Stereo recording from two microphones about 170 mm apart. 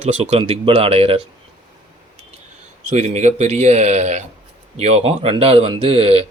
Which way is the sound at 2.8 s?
40° right (ahead or behind).